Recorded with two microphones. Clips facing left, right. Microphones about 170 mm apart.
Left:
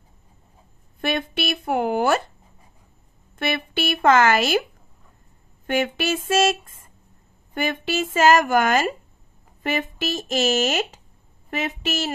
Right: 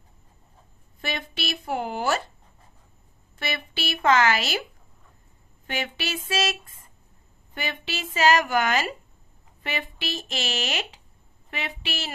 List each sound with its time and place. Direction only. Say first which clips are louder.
1.0 s speech: left 7 dB; 55° left (ahead or behind)
3.3 s speech: left 7 dB; 55° left (ahead or behind)
5.7 s speech: left 8 dB; 50° left (ahead or behind)